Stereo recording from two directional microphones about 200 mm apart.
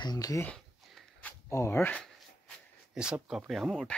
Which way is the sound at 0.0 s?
20° left (ahead or behind).